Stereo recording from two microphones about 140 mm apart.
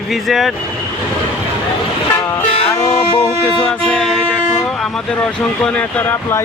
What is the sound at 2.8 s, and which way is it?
Music, 30° left (ahead or behind).